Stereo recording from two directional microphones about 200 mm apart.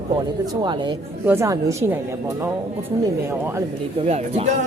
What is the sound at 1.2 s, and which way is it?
Speech, 10° right (ahead or behind).